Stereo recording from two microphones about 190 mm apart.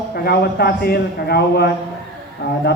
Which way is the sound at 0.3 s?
60° left (ahead or behind).